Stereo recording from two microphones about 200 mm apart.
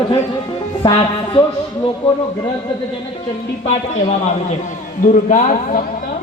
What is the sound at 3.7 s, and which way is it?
Speech, 35° left (ahead or behind).